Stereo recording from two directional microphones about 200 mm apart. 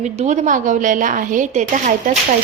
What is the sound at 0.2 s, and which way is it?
A woman's voice, 40° right (ahead or behind).